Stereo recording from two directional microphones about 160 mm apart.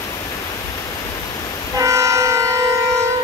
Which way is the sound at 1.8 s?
20° right (ahead or behind).